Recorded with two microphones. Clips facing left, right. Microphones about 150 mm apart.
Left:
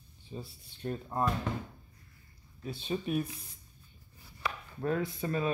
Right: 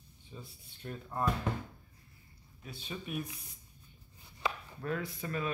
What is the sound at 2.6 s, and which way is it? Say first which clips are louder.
Speech: left 8 dB; 30° left (ahead or behind).